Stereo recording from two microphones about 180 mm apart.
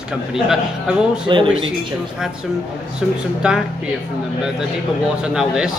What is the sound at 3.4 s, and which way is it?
Speech, 5° right (ahead or behind).